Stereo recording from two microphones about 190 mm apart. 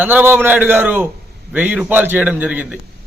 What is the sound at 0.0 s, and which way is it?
A man's voice, 10° right (ahead or behind).